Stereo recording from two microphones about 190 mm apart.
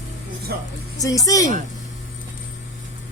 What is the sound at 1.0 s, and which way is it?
Speech, 20° left (ahead or behind).